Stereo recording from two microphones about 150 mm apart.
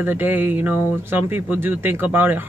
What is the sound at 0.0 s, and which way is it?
Speech, 10° right (ahead or behind).